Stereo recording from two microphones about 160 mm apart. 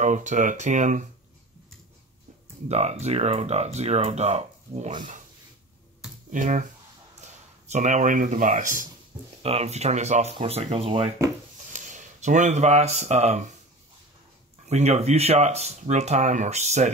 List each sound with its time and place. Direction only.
0.0 s speech: 50° right (ahead or behind)
2.7 s speech: 45° right (ahead or behind)
6.3 s speech: 55° right (ahead or behind)
9.4 s speech: 40° right (ahead or behind)
11.7 s speech: 50° right (ahead or behind)
14.7 s speech: 45° right (ahead or behind)